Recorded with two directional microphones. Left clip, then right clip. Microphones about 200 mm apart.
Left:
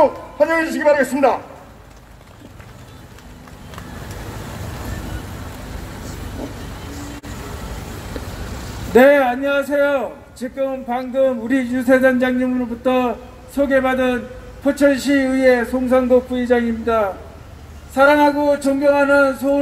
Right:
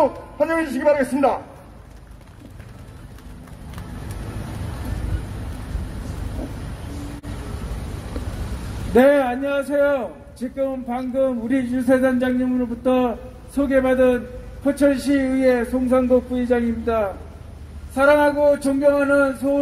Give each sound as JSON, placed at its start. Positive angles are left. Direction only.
{"t": 0.0, "sound": "a man's voice", "side_deg": 20}
{"t": 8.2, "sound": "vehicle", "side_deg": 20}
{"t": 8.9, "sound": "a man's voice", "side_deg": 20}